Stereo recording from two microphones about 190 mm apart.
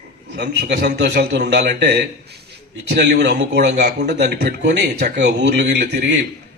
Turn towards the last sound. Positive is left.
turn(degrees=-65)  # may be behind; listen again after turning